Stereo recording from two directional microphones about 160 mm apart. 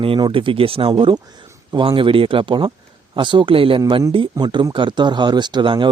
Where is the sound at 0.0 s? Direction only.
35° right (ahead or behind).